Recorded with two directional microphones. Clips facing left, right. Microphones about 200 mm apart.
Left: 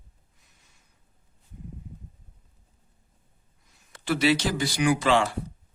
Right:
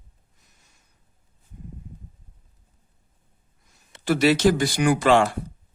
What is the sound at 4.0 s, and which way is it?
Speech, 45° right (ahead or behind).